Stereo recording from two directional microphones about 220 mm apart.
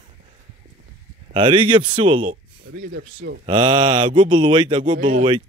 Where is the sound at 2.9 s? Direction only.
55° right (ahead or behind).